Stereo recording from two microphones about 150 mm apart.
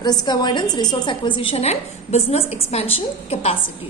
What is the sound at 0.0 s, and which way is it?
A woman's voice, 30° left (ahead or behind).